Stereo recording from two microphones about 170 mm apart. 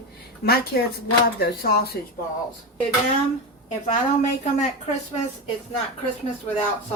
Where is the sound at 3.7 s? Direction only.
45° left (ahead or behind).